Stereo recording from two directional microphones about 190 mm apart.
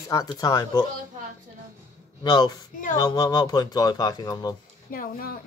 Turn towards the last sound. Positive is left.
turn(degrees=50)  # may be behind; listen again after turning